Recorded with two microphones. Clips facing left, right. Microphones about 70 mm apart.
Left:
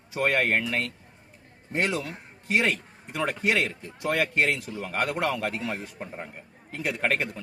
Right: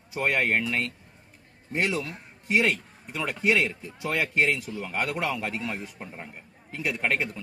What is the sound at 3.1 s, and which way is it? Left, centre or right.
A man's voice, left.